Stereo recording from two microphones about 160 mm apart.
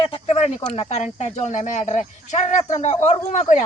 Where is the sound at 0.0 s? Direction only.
40° left (ahead or behind).